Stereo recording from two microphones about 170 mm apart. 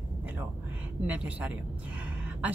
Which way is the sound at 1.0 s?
10° right (ahead or behind).